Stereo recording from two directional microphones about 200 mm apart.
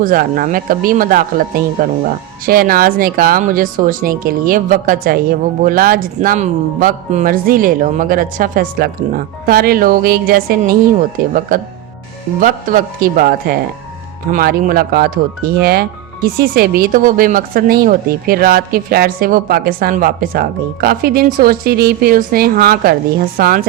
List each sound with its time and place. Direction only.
0.0 s speech: 45° right (ahead or behind)
12.4 s speech: 40° right (ahead or behind)